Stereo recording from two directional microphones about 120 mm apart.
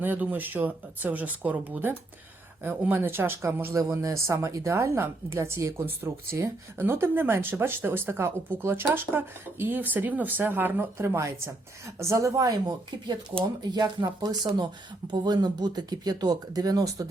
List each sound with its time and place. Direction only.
0.0 s speech: 15° right (ahead or behind); by 17.1 s 30° right (ahead or behind)